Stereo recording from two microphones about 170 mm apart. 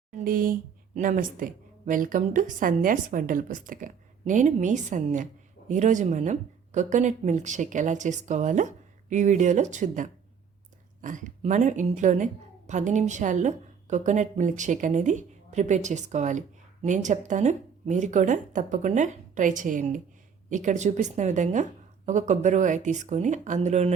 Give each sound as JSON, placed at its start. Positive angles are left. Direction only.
{"t": 0.3, "sound": "a woman's voice", "side_deg": -55}